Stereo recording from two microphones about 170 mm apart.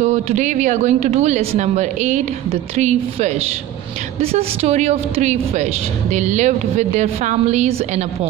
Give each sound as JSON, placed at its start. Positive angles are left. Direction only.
{"t": 0.0, "sound": "a woman's voice", "side_deg": -45}